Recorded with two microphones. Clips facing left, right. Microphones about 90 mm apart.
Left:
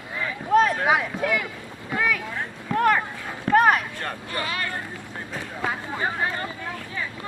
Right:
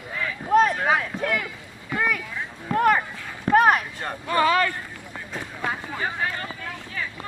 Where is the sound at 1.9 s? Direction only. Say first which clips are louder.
Even; 5° right (ahead or behind).